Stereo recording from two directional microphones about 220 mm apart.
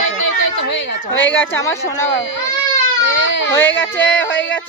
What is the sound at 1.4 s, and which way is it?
Speech, 10° left (ahead or behind).